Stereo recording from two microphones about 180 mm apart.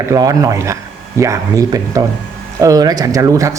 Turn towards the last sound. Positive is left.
turn(degrees=-15)  # may be behind; listen again after turning